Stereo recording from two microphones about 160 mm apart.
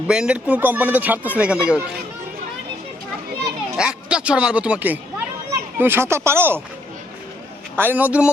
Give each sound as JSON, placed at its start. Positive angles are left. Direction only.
{"t": 0.1, "sound": "speech", "side_deg": -5}
{"t": 3.8, "sound": "speech", "side_deg": -5}
{"t": 7.8, "sound": "speech", "side_deg": -10}